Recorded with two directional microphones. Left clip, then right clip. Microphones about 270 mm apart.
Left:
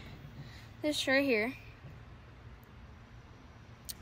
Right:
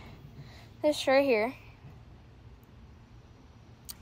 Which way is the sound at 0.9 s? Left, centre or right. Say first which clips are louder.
Right 5 dB; centre.